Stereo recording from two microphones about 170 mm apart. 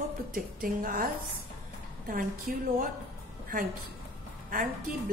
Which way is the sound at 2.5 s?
55° right (ahead or behind).